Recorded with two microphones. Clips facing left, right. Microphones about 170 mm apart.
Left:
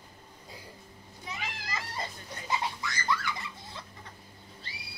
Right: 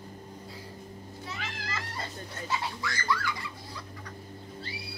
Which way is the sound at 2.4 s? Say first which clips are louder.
Left 1 dB; 20° left (ahead or behind).